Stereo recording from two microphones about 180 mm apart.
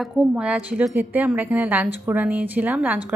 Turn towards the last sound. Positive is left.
turn(degrees=-10)  # may be behind; listen again after turning